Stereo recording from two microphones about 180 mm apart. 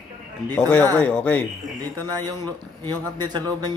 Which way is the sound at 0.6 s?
5° left (ahead or behind).